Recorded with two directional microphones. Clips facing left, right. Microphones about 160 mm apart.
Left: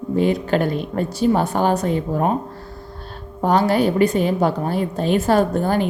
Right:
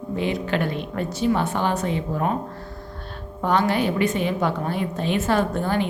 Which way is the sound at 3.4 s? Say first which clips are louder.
Left 4 dB; 35° left (ahead or behind).